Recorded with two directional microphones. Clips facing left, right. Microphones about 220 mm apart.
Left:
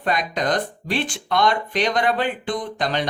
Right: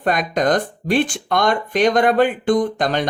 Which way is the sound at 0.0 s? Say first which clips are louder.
Right 5 dB; 50° right (ahead or behind).